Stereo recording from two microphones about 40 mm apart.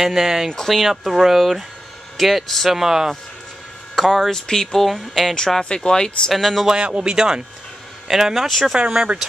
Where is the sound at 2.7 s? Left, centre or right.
Centre.